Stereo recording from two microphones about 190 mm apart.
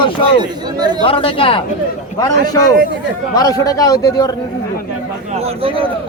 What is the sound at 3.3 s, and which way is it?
A man's voice, 20° left (ahead or behind).